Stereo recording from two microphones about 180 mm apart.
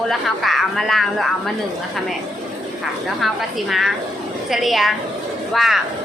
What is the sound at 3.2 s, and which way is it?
Speech, centre (ahead or behind).